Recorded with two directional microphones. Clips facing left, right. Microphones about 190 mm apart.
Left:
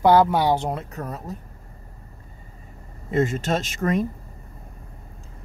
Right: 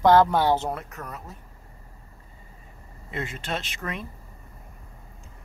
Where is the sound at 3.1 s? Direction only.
45° left (ahead or behind).